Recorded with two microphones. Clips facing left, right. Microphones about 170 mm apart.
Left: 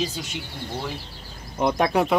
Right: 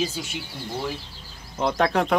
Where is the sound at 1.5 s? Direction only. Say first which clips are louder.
Left 1 dB; 15° left (ahead or behind).